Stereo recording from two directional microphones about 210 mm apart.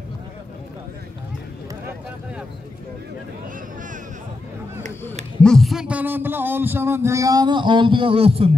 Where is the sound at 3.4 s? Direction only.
40° right (ahead or behind).